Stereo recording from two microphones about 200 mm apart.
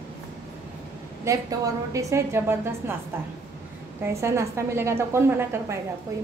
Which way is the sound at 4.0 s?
15° right (ahead or behind).